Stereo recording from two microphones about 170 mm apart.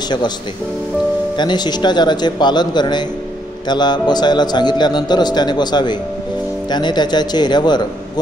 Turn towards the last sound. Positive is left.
turn(degrees=25)  # may be behind; listen again after turning